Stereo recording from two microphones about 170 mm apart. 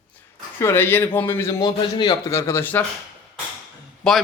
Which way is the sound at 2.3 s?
15° left (ahead or behind).